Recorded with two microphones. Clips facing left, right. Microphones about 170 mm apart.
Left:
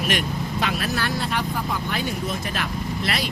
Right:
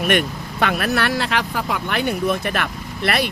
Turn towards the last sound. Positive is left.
turn(degrees=-60)  # may be behind; listen again after turning